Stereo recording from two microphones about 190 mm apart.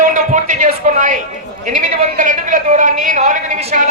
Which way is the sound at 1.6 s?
40° right (ahead or behind).